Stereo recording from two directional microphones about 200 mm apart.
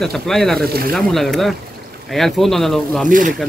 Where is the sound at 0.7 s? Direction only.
50° right (ahead or behind).